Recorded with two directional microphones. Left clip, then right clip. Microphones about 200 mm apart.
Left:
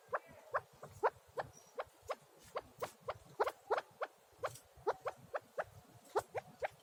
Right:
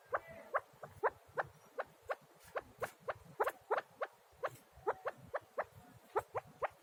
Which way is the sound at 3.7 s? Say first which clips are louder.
Even; 10° left (ahead or behind).